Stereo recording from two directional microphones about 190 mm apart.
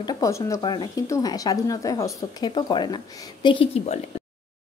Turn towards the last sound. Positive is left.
turn(degrees=35)  # may be behind; listen again after turning